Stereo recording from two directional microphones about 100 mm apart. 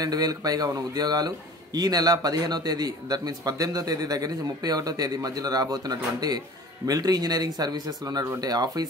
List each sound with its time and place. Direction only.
0.0 s a man's voice: 40° right (ahead or behind)